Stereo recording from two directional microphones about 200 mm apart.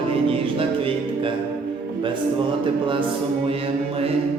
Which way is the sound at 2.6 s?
25° right (ahead or behind).